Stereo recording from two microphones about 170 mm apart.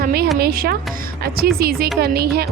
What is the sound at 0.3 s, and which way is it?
A woman's voice, 65° right (ahead or behind).